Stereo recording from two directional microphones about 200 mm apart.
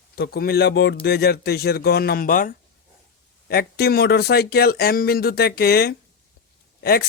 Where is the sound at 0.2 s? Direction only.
50° left (ahead or behind).